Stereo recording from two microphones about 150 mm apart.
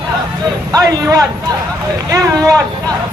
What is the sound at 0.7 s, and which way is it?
A man's voice, 25° right (ahead or behind).